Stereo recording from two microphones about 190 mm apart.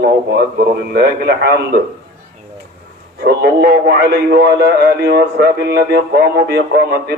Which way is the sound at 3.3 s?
60° right (ahead or behind).